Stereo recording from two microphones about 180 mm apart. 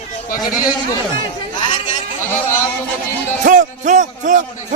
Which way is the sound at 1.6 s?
25° left (ahead or behind).